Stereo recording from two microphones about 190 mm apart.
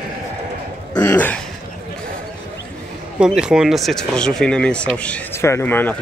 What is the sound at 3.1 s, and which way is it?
Speech, 5° right (ahead or behind).